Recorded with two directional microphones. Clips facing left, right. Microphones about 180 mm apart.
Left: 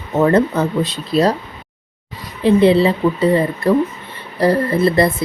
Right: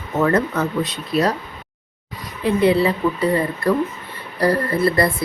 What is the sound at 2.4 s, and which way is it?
Speech, 25° left (ahead or behind).